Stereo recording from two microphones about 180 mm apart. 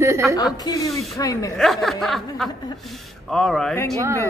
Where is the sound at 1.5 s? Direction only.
Centre (ahead or behind).